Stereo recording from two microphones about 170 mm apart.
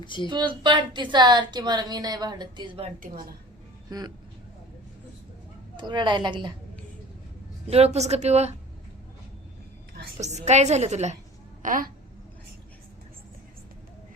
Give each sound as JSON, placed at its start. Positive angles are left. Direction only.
{"t": 0.0, "sound": "speech", "side_deg": 30}
{"t": 0.3, "sound": "a woman's voice", "side_deg": -25}
{"t": 5.7, "sound": "a woman's voice", "side_deg": -25}
{"t": 7.7, "sound": "a woman's voice", "side_deg": -40}
{"t": 10.2, "sound": "a woman's voice", "side_deg": -40}
{"t": 11.6, "sound": "speech", "side_deg": -55}